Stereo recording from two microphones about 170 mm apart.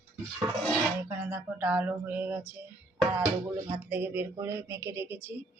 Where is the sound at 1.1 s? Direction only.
10° right (ahead or behind).